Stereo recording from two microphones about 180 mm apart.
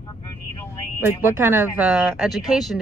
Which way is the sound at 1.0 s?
10° right (ahead or behind).